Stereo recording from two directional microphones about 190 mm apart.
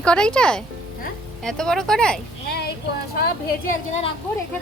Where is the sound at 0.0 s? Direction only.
5° left (ahead or behind).